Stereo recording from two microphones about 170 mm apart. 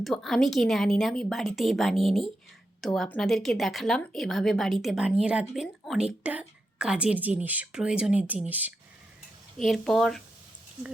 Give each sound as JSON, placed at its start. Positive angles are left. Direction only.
{"t": 0.0, "sound": "speech", "side_deg": 0}
{"t": 9.6, "sound": "speech", "side_deg": 0}